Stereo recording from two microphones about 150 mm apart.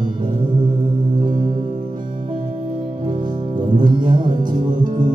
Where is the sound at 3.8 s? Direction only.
30° right (ahead or behind).